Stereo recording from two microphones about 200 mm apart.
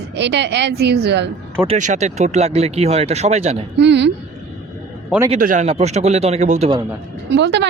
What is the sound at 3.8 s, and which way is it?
Speech, 60° right (ahead or behind).